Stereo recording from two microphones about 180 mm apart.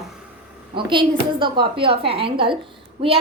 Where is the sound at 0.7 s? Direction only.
25° right (ahead or behind).